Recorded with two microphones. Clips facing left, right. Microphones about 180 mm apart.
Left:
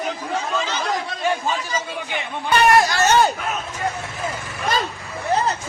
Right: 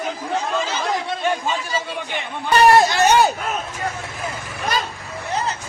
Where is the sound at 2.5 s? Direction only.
35° right (ahead or behind).